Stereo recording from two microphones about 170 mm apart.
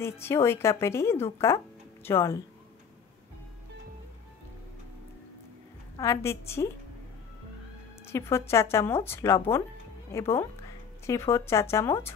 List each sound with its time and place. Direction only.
0.0 s a woman's voice: 15° left (ahead or behind)
5.9 s a woman's voice: 15° left (ahead or behind)
8.1 s a woman's voice: 15° left (ahead or behind)